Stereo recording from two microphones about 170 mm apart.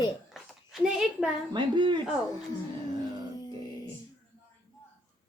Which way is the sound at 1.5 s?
30° right (ahead or behind).